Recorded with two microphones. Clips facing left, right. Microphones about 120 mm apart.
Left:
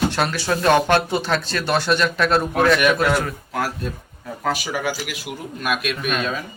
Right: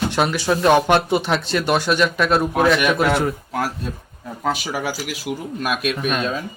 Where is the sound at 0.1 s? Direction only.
15° right (ahead or behind).